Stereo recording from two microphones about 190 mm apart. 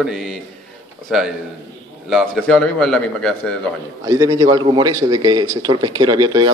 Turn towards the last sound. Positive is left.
turn(degrees=-20)  # may be behind; listen again after turning